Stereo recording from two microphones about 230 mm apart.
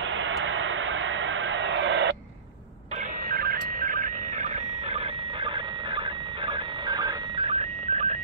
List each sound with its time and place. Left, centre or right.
0.1 s vehicle: right
3.3 s alarm clock: right
6.4 s alarm clock: centre